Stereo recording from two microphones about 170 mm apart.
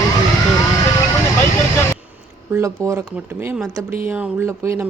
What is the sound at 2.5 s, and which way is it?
Speech, 15° right (ahead or behind).